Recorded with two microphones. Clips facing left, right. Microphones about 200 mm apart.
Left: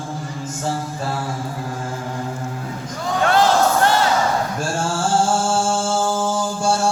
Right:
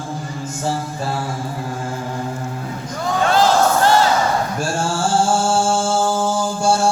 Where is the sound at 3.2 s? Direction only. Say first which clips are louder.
Right 1 dB; 60° left (ahead or behind).